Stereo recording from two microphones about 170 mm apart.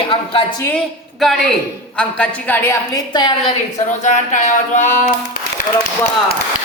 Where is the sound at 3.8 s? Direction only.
45° left (ahead or behind).